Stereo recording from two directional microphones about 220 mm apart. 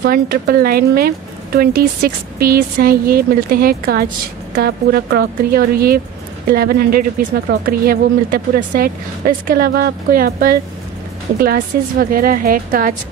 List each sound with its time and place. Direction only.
0.0 s speech: 40° right (ahead or behind)